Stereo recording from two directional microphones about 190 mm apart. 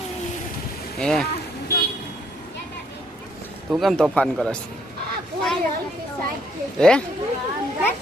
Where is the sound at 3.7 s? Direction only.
Centre (ahead or behind).